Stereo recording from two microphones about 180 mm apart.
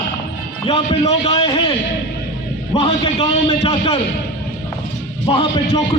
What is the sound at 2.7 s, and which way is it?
A man's voice, 30° left (ahead or behind).